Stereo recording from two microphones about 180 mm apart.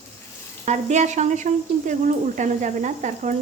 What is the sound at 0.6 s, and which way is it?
Speech, 40° right (ahead or behind).